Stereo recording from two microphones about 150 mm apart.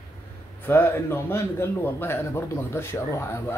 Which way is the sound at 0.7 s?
15° left (ahead or behind).